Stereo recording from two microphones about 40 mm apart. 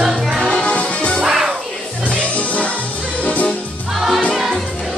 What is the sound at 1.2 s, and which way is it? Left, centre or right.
Music, centre.